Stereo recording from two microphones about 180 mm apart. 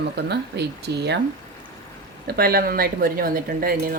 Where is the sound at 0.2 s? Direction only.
70° right (ahead or behind).